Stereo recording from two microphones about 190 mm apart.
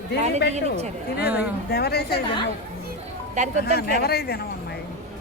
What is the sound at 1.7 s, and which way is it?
Speech, 55° left (ahead or behind).